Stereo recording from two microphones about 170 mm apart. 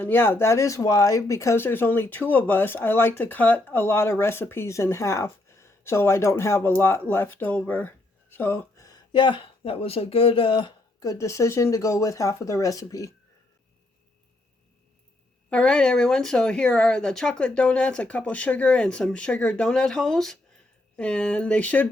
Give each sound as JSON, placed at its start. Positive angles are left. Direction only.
{"t": 0.0, "sound": "speech", "side_deg": 15}
{"t": 15.4, "sound": "speech", "side_deg": 5}